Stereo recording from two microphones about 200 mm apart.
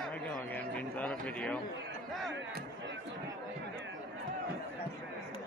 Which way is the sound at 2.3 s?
65° right (ahead or behind).